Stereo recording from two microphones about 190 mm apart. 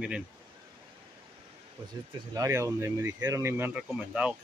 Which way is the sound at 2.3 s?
15° right (ahead or behind).